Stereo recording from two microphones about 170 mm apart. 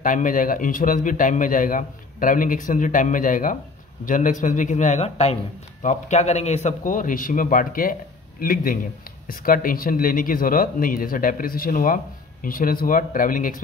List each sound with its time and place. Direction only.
0.0 s speech: 50° left (ahead or behind)